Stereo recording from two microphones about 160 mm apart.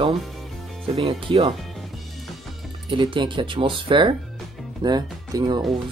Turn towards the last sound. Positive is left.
turn(degrees=-25)  # may be behind; listen again after turning